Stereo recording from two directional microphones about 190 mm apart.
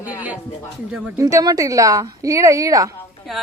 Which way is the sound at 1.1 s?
20° right (ahead or behind).